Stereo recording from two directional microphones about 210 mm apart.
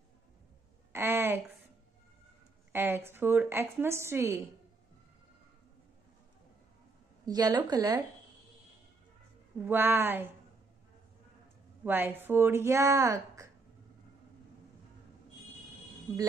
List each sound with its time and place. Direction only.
0.9 s a sound: 10° right (ahead or behind)
2.7 s speech: 10° right (ahead or behind)
7.2 s a woman's voice: 20° right (ahead or behind)
9.7 s speech: 10° right (ahead or behind)
11.8 s speech: 10° right (ahead or behind)